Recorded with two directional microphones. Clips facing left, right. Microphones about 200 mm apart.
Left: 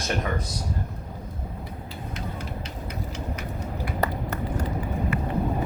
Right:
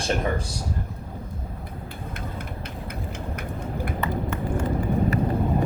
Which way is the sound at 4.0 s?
40° left (ahead or behind).